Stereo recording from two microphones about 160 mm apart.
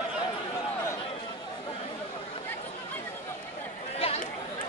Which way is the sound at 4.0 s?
40° left (ahead or behind).